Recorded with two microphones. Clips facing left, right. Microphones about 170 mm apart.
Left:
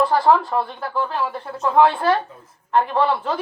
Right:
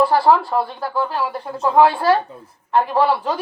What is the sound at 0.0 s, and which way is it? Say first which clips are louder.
A woman's voice: right 2 dB; 10° right (ahead or behind).